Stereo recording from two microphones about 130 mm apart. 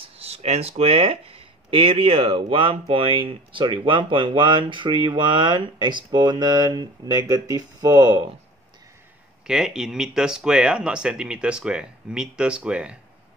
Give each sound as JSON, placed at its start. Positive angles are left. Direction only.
{"t": 0.0, "sound": "speech", "side_deg": -50}
{"t": 9.5, "sound": "speech", "side_deg": -5}